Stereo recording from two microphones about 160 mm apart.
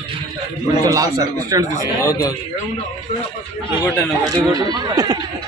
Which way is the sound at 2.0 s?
20° left (ahead or behind).